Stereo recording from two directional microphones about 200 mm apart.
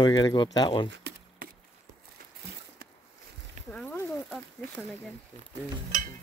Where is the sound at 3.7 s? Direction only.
5° left (ahead or behind).